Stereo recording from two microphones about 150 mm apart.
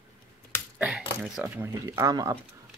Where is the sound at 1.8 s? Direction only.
25° right (ahead or behind).